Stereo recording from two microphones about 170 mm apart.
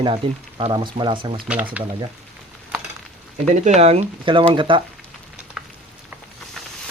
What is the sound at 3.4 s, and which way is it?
Speech, 45° right (ahead or behind).